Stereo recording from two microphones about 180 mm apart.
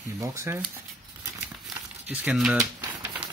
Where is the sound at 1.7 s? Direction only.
Centre (ahead or behind).